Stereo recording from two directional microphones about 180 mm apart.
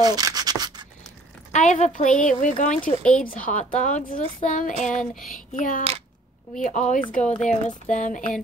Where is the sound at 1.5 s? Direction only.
40° left (ahead or behind).